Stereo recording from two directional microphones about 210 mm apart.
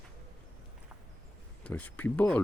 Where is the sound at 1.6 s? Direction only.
5° left (ahead or behind).